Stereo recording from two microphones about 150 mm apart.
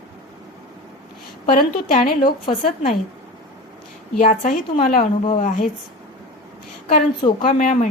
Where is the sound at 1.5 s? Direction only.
65° left (ahead or behind).